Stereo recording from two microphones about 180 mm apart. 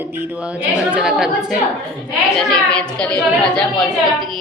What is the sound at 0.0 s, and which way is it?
A woman's voice, 10° right (ahead or behind).